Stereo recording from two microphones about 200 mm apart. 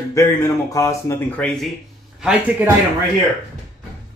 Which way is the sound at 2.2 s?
5° right (ahead or behind).